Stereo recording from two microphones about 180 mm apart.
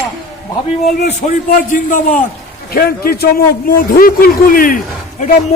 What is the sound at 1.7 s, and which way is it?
A man's voice, 45° left (ahead or behind).